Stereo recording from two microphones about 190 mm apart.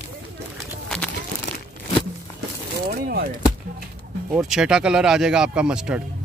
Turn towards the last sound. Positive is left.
turn(degrees=-5)  # may be behind; listen again after turning